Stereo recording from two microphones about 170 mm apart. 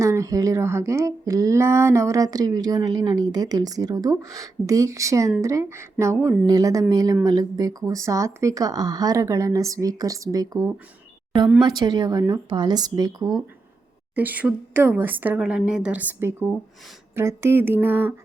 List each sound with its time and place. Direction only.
0.0 s a woman's voice: 15° right (ahead or behind)
14.2 s a woman's voice: 10° right (ahead or behind)